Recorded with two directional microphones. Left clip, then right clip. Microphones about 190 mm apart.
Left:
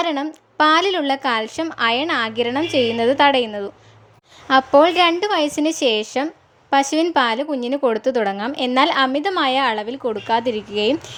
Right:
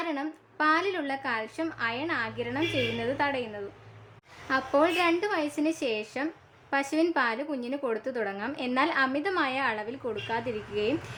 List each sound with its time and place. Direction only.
0.0 s a woman's voice: 35° left (ahead or behind)